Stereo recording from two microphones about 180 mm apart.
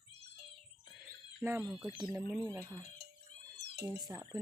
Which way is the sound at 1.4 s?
10° right (ahead or behind).